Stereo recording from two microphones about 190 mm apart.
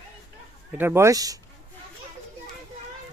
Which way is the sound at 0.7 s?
10° right (ahead or behind).